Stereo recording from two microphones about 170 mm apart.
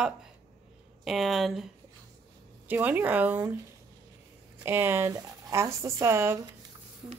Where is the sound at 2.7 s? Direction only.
10° right (ahead or behind).